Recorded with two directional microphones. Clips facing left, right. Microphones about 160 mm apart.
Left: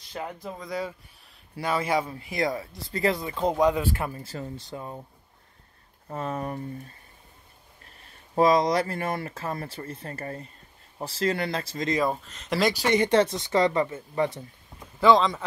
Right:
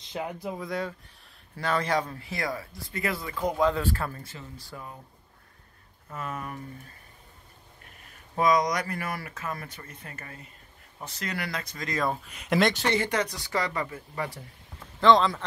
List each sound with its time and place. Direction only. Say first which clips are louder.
0.2 s speech: right 2 dB; 10° right (ahead or behind)
0.7 s speech: even; centre (ahead or behind)
2.1 s speech: left 5 dB; 20° left (ahead or behind)
6.0 s speech: left 5 dB; 30° left (ahead or behind)
8.4 s speech: left 4 dB; 30° left (ahead or behind)
12.3 s speech: right 2 dB; 10° right (ahead or behind)
12.5 s speech: right 1 dB; centre (ahead or behind)
12.8 s speech: left 4 dB; 15° left (ahead or behind)
13.1 s speech: left 7 dB; 25° left (ahead or behind)
15.0 s speech: left 1 dB; 5° left (ahead or behind)